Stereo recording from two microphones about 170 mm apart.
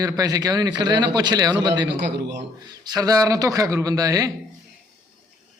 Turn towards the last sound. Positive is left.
turn(degrees=-20)  # may be behind; listen again after turning